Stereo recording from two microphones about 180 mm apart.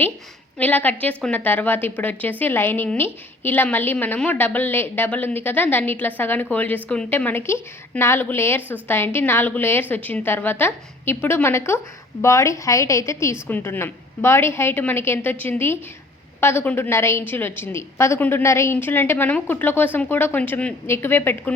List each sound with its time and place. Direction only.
0.6 s a woman's voice: 10° left (ahead or behind)